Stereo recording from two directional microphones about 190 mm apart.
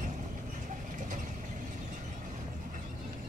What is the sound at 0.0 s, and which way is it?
Vehicle, 45° right (ahead or behind).